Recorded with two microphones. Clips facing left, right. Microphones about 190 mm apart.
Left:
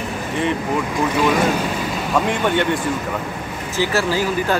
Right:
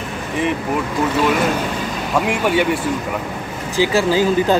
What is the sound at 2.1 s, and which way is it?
A man's voice, 10° right (ahead or behind).